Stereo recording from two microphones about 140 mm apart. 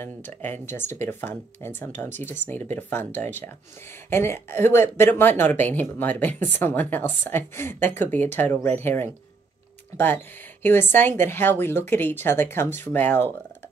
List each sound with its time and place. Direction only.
0.0 s a woman's voice: 15° left (ahead or behind)